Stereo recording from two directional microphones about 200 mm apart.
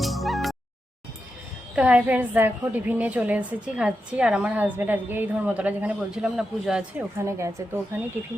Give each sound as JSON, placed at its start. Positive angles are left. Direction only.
{"t": 0.0, "sound": "music", "side_deg": 0}
{"t": 1.7, "sound": "a woman's voice", "side_deg": -5}
{"t": 7.2, "sound": "a woman's voice", "side_deg": -15}